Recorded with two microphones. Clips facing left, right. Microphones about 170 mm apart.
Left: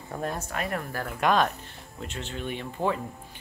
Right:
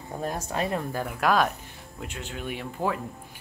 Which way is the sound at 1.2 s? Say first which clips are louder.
Even; 5° right (ahead or behind).